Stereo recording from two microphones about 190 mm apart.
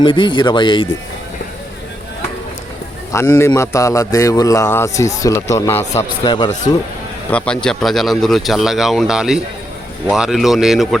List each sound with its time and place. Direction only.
0.0 s speech: 25° left (ahead or behind)
3.1 s a man's voice: 15° left (ahead or behind)
7.3 s speech: 5° left (ahead or behind)